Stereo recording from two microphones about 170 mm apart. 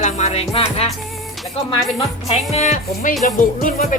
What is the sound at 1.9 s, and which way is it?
Speech, 40° left (ahead or behind).